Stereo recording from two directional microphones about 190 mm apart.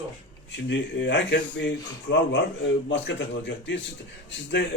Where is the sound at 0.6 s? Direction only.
75° left (ahead or behind).